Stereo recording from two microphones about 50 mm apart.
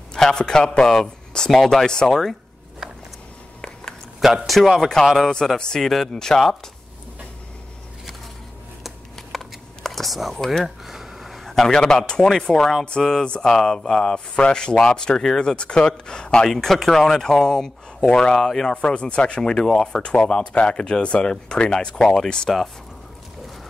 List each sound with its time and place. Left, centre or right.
0.1 s speech: centre
4.2 s a sound: centre
4.5 s speech: centre
8.8 s shuffling cards: centre
10.6 s speech: centre
16.4 s speech: centre
18.8 s speech: left